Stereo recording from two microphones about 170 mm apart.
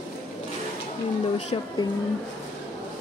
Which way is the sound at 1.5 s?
30° left (ahead or behind).